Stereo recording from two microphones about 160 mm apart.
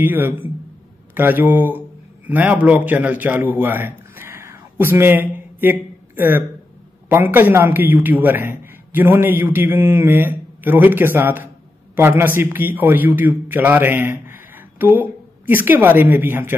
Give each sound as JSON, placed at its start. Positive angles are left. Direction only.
{"t": 0.0, "sound": "a man's voice", "side_deg": -10}